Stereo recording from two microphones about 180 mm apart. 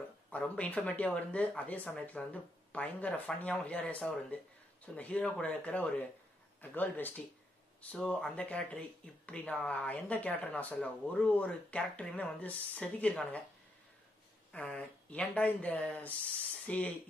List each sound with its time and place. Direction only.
0.3 s speech: 5° left (ahead or behind)
14.5 s speech: 5° left (ahead or behind)